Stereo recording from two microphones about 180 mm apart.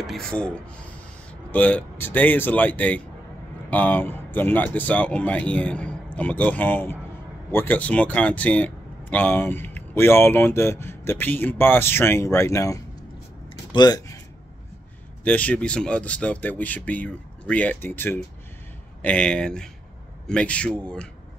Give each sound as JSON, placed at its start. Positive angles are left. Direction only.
{"t": 0.0, "sound": "speech", "side_deg": 0}
{"t": 1.5, "sound": "speech", "side_deg": 10}
{"t": 15.2, "sound": "speech", "side_deg": 10}